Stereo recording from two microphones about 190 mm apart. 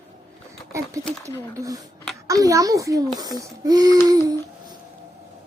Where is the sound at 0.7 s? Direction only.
15° right (ahead or behind).